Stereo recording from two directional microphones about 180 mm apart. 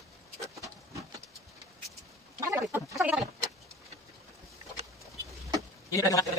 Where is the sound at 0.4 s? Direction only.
15° right (ahead or behind).